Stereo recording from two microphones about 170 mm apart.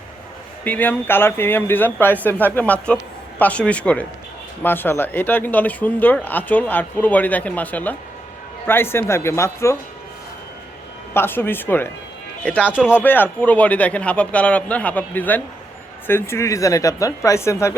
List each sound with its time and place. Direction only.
0.6 s speech: 10° left (ahead or behind)
11.1 s speech: 15° left (ahead or behind)